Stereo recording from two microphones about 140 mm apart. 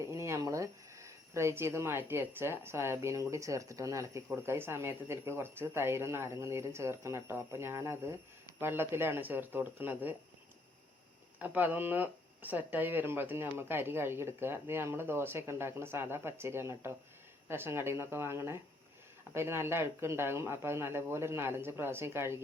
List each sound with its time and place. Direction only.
0.0 s speech: 20° right (ahead or behind)
11.3 s speech: 10° right (ahead or behind)